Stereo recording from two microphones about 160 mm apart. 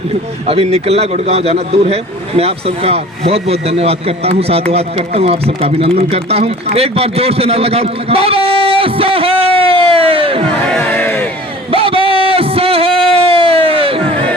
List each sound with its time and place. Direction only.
0.4 s a man's voice: 40° right (ahead or behind)
10.8 s crowd: 15° left (ahead or behind)
11.7 s a sound: 35° right (ahead or behind)